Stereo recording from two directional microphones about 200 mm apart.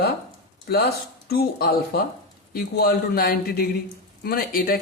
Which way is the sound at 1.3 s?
50° left (ahead or behind).